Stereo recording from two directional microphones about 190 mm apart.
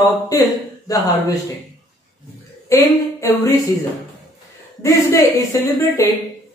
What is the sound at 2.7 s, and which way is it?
Speech, 15° left (ahead or behind).